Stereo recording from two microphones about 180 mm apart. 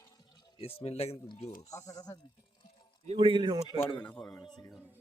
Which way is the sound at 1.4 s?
40° left (ahead or behind).